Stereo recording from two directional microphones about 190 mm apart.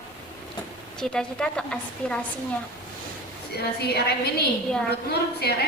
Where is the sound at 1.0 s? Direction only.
5° left (ahead or behind).